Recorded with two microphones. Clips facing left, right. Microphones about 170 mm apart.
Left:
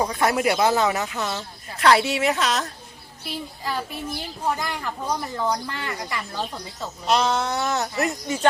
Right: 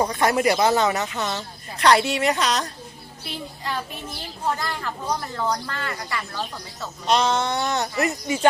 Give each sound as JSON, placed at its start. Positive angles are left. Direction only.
{"t": 0.0, "sound": "a child's voice", "side_deg": 5}
{"t": 7.1, "sound": "speech", "side_deg": 0}